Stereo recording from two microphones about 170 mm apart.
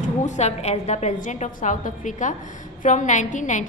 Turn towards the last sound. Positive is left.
turn(degrees=45)  # may be behind; listen again after turning